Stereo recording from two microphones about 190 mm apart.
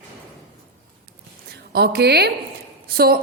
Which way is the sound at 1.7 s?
55° right (ahead or behind).